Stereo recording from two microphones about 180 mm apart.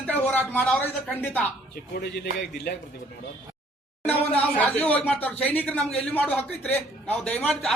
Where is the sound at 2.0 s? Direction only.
70° left (ahead or behind).